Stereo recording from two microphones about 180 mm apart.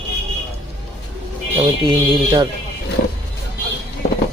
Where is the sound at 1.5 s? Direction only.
30° right (ahead or behind).